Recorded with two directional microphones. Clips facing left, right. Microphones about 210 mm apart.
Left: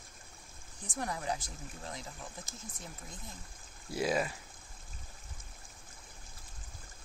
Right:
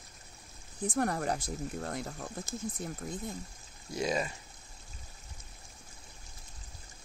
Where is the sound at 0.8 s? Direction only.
60° right (ahead or behind).